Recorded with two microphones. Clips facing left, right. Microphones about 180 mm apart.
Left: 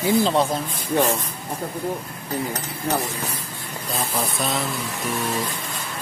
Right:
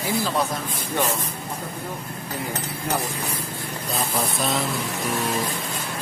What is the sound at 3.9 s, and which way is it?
Speech, centre (ahead or behind).